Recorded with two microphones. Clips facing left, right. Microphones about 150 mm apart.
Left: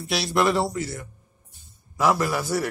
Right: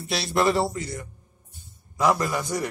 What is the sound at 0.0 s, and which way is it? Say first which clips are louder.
Speech: left 1 dB; centre (ahead or behind).